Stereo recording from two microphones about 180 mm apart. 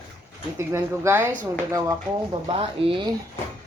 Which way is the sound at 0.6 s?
15° right (ahead or behind).